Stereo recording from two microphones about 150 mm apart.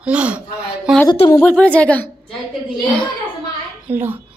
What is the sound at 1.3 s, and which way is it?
Speech, 10° left (ahead or behind).